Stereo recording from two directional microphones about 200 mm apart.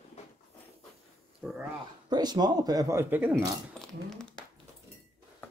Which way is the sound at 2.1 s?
20° right (ahead or behind).